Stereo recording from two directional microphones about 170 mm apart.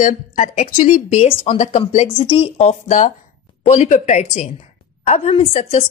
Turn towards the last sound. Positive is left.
turn(degrees=40)  # may be behind; listen again after turning